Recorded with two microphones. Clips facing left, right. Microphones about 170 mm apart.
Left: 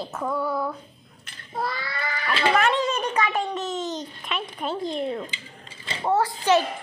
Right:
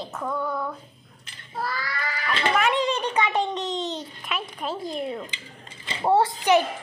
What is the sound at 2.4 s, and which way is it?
Speech, 5° left (ahead or behind).